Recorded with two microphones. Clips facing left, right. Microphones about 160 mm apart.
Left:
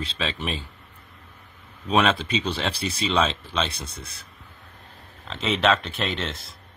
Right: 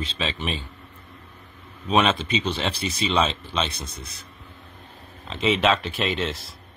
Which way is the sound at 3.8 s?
30° left (ahead or behind).